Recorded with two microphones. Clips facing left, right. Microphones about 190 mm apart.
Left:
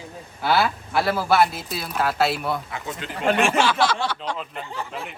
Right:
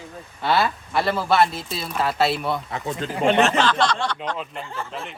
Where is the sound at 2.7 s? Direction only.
35° right (ahead or behind).